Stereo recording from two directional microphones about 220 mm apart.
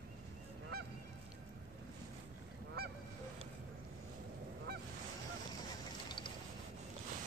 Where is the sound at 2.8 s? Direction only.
45° right (ahead or behind).